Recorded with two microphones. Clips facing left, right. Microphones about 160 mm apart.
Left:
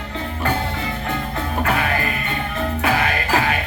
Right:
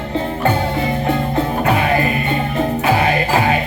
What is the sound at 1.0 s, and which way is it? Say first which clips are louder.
Music: right 8 dB; 25° right (ahead or behind).